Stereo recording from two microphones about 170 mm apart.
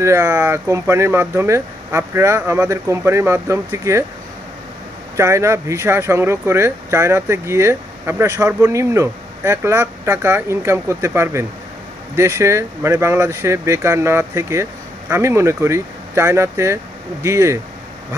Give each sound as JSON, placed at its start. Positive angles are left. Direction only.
{"t": 0.0, "sound": "speech", "side_deg": -15}
{"t": 5.1, "sound": "speech", "side_deg": -15}